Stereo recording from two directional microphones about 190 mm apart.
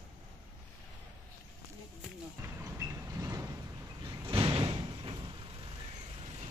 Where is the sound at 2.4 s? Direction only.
15° right (ahead or behind).